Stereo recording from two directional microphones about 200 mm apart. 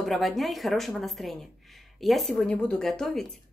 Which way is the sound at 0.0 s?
Centre (ahead or behind).